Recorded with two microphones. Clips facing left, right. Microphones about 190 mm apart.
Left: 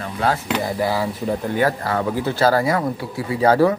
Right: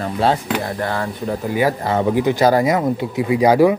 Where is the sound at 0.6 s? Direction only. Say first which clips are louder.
Left 1 dB; 5° left (ahead or behind); by 3.7 s 15° right (ahead or behind).